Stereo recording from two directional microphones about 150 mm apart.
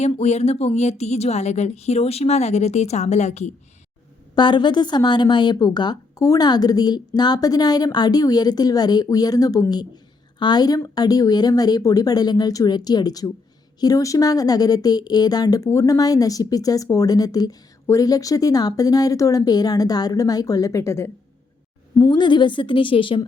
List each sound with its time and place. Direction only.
0.0 s speech: 45° left (ahead or behind)
4.4 s speech: 30° left (ahead or behind)
22.0 s a woman's voice: 30° left (ahead or behind)